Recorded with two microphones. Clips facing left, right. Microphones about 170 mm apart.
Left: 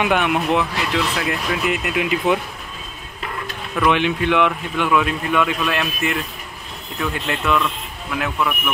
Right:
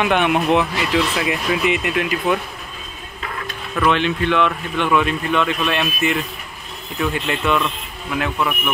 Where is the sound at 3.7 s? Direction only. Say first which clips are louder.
Even; 15° left (ahead or behind).